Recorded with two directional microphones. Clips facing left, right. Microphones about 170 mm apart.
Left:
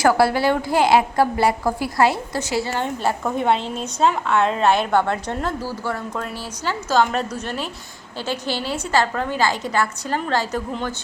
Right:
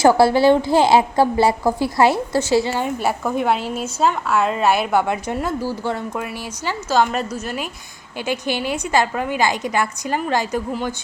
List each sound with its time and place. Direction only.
0.0 s a woman's voice: 25° right (ahead or behind)
2.6 s a woman's voice: 10° right (ahead or behind)